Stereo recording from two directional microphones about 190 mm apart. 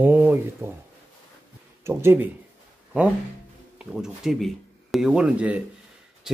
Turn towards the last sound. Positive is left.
turn(degrees=-5)  # may be behind; listen again after turning